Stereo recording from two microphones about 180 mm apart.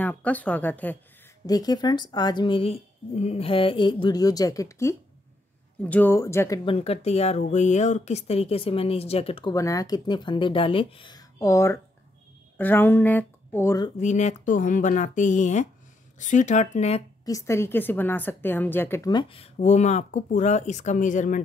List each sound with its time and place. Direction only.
0.0 s speech: 10° left (ahead or behind)
1.4 s a woman's voice: 20° left (ahead or behind)
6.6 s speech: 30° left (ahead or behind)
9.5 s a woman's voice: 20° left (ahead or behind)
13.9 s speech: 40° left (ahead or behind)
17.2 s a woman's voice: 20° left (ahead or behind); by 21.4 s 45° left (ahead or behind)